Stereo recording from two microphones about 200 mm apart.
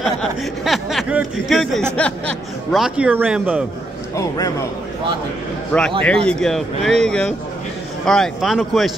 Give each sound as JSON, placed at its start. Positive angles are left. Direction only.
{"t": 0.0, "sound": "speech", "side_deg": 0}
{"t": 4.2, "sound": "a man's voice", "side_deg": 15}
{"t": 5.7, "sound": "speech", "side_deg": 5}